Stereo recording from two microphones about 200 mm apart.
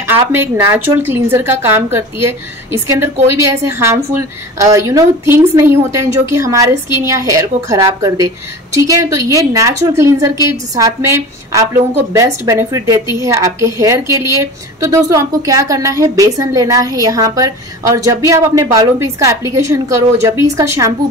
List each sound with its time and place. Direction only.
0.0 s a woman's voice: 10° right (ahead or behind)